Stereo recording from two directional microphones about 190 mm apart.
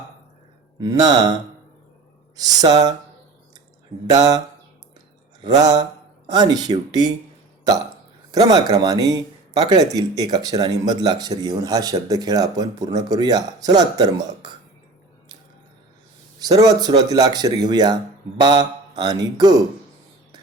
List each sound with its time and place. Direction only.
0.8 s speech: 20° right (ahead or behind)
4.0 s speech: 20° right (ahead or behind)
5.4 s mantra: 20° right (ahead or behind)
6.2 s speech: 20° right (ahead or behind)
8.3 s speech: 20° right (ahead or behind)
16.4 s speech: 20° right (ahead or behind)